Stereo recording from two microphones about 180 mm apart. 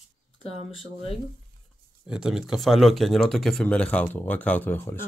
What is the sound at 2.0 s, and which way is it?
Speech, 5° right (ahead or behind).